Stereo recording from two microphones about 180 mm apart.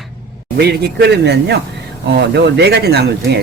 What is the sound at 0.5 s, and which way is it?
Speech, 65° right (ahead or behind).